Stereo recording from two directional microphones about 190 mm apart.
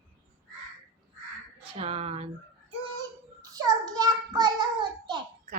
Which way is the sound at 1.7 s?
30° right (ahead or behind).